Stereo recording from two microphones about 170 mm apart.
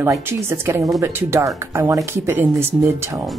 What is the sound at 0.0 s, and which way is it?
Speech, 15° right (ahead or behind).